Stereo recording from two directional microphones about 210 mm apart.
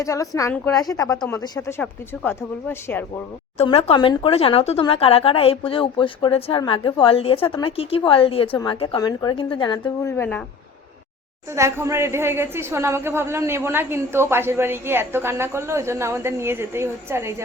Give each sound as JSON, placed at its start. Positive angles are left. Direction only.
{"t": 0.0, "sound": "speech", "side_deg": 15}
{"t": 0.8, "sound": "speech", "side_deg": 15}
{"t": 3.6, "sound": "speech", "side_deg": 30}
{"t": 11.5, "sound": "a woman's voice", "side_deg": -15}